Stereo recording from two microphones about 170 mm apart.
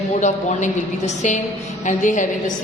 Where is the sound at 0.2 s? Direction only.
45° left (ahead or behind).